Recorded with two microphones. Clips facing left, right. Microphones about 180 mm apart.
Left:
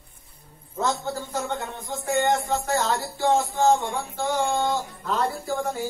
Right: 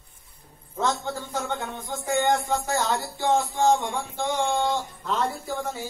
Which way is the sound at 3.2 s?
10° left (ahead or behind).